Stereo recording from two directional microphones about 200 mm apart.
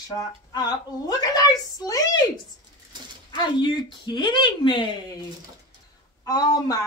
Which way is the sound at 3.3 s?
20° left (ahead or behind).